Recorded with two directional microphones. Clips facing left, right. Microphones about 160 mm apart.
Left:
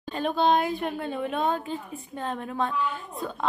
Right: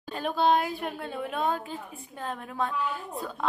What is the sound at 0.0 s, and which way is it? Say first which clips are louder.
Speech: left 2 dB; 5° right (ahead or behind).